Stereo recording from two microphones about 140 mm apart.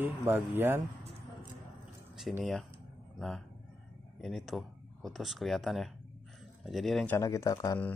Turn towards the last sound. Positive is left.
turn(degrees=25)  # may be behind; listen again after turning